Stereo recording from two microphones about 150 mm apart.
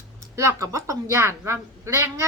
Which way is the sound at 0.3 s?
20° right (ahead or behind).